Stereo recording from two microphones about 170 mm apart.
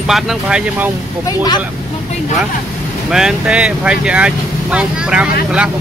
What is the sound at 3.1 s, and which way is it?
Speech, 5° right (ahead or behind).